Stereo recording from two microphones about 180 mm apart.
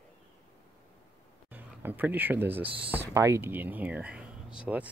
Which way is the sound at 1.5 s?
10° right (ahead or behind).